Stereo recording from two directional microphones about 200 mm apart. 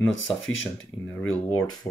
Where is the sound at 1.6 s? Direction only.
20° left (ahead or behind).